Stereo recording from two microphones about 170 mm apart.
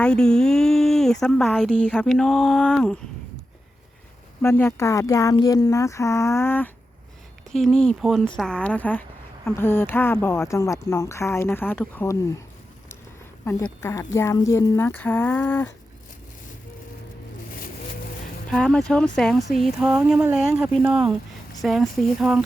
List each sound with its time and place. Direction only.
0.0 s speech: 5° left (ahead or behind)
4.4 s speech: 15° left (ahead or behind)
7.5 s speech: centre (ahead or behind)
13.4 s speech: 10° left (ahead or behind)
18.5 s speech: 5° left (ahead or behind)
19.8 s a sound: 5° right (ahead or behind)
21.6 s speech: centre (ahead or behind)